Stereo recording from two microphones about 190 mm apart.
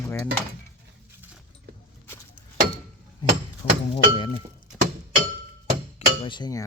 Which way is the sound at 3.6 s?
35° left (ahead or behind).